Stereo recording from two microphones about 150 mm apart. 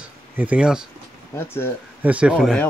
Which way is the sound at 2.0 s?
10° right (ahead or behind).